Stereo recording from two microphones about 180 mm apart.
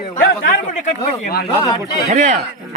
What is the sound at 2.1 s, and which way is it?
Speech, 40° right (ahead or behind).